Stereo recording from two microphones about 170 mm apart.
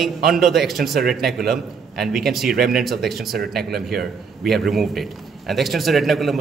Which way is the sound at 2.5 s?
60° right (ahead or behind).